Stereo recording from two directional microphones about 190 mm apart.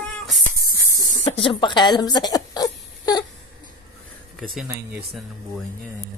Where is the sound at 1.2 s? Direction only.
30° left (ahead or behind).